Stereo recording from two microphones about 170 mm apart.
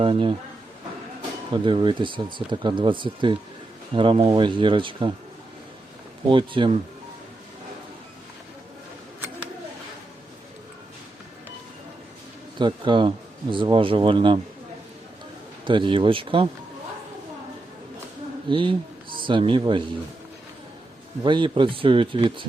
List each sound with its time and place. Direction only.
0.0 s speech: 30° right (ahead or behind)
1.5 s speech: 30° right (ahead or behind)
6.2 s speech: 30° right (ahead or behind)
12.5 s speech: 30° right (ahead or behind)
15.6 s speech: 30° right (ahead or behind)
18.4 s speech: 30° right (ahead or behind)
21.2 s speech: 30° right (ahead or behind)